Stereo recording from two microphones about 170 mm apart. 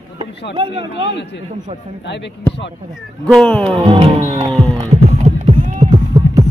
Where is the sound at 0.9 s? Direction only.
90° left.